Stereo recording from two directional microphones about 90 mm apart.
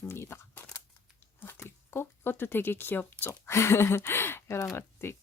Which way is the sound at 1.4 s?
25° left (ahead or behind).